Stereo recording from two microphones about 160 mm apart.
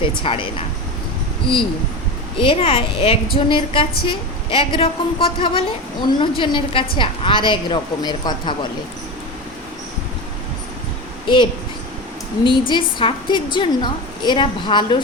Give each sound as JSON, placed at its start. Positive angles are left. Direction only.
{"t": 0.0, "sound": "a woman's voice", "side_deg": 35}
{"t": 2.4, "sound": "a woman's voice", "side_deg": 35}
{"t": 12.5, "sound": "a woman's voice", "side_deg": 30}